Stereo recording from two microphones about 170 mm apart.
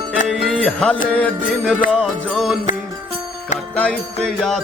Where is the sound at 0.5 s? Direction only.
5° left (ahead or behind).